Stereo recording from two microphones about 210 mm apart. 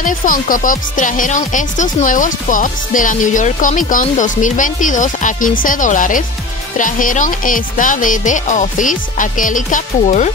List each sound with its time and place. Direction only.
0.0 s speech: 40° left (ahead or behind)